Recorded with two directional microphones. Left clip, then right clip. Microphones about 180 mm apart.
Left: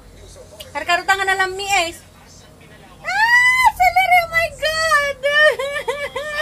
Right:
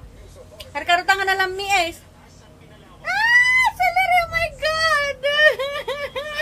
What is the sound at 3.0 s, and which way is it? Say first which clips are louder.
Whimper: left 2 dB; 5° right (ahead or behind).